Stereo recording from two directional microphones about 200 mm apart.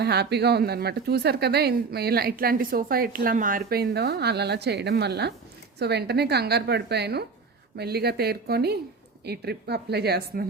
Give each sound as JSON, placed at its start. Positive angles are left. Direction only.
{"t": 0.0, "sound": "a woman's voice", "side_deg": -55}